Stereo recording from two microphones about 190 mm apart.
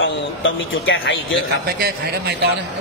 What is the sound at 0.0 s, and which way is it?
Speech, 80° left.